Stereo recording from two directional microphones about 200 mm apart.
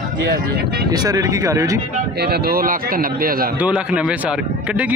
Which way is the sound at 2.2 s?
50° right (ahead or behind).